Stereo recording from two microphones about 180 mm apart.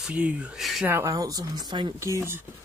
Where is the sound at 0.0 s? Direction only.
5° right (ahead or behind).